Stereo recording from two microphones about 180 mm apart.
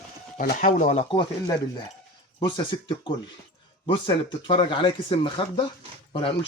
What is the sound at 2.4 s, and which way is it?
Speech, 25° left (ahead or behind).